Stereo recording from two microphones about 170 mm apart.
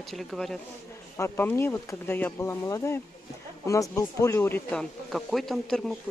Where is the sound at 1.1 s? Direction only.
15° left (ahead or behind).